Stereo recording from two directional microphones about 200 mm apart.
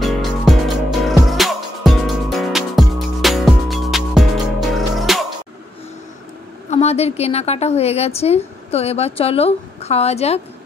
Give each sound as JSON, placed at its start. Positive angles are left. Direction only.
{"t": 0.0, "sound": "music", "side_deg": 0}
{"t": 6.7, "sound": "a woman's voice", "side_deg": 30}